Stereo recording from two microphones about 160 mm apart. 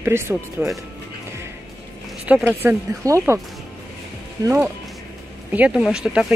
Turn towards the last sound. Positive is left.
turn(degrees=-5)  # may be behind; listen again after turning